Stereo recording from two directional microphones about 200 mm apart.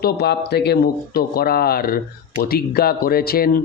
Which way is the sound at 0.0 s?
55° left (ahead or behind).